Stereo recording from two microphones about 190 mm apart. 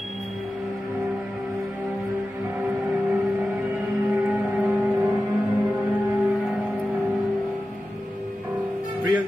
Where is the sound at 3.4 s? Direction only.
5° right (ahead or behind).